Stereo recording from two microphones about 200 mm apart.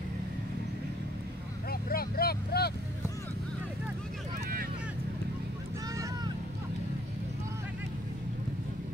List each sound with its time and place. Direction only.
1.7 s speech: 50° left (ahead or behind)